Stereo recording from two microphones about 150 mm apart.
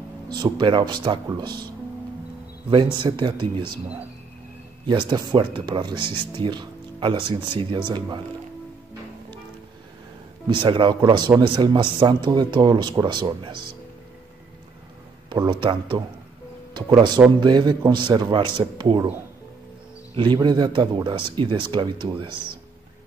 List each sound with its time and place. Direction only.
0.3 s speech: 30° right (ahead or behind)
2.7 s speech: 35° right (ahead or behind)
4.8 s speech: 30° right (ahead or behind)
10.5 s speech: 35° right (ahead or behind)
15.2 s speech: 30° right (ahead or behind)
20.4 s speech: 30° right (ahead or behind)